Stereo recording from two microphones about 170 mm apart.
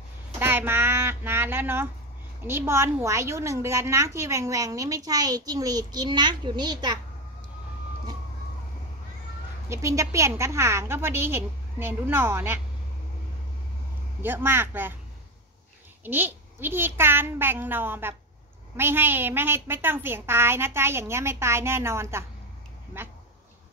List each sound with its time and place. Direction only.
0.4 s a woman's voice: 15° right (ahead or behind)
9.7 s a woman's voice: 20° right (ahead or behind)
14.2 s a woman's voice: 10° right (ahead or behind)
16.0 s a woman's voice: 10° right (ahead or behind)